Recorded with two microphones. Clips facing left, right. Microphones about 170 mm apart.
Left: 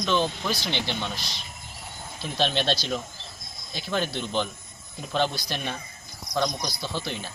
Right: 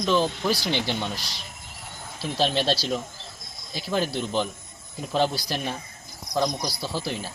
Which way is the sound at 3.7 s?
5° right (ahead or behind).